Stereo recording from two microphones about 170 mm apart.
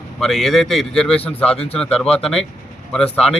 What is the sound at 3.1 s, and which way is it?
Speech, 35° left (ahead or behind).